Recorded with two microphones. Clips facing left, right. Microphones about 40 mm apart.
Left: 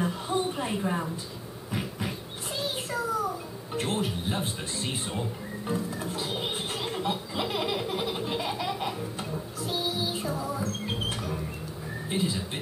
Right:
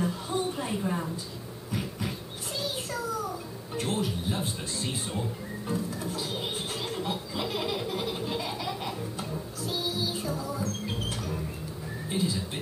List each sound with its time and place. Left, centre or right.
0.0 s a sound: left
9.8 s music: left
12.1 s speech: left